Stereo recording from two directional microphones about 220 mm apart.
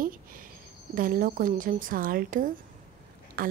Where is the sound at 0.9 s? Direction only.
40° right (ahead or behind).